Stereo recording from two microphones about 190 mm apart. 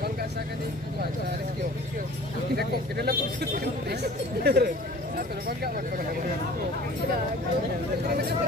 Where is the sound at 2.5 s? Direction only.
55° right (ahead or behind).